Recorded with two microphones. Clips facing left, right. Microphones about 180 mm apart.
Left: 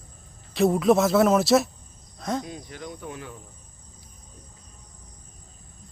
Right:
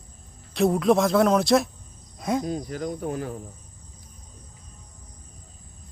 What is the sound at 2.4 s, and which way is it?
Speech, 40° right (ahead or behind).